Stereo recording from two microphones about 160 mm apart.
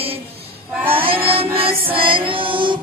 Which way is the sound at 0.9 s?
35° right (ahead or behind).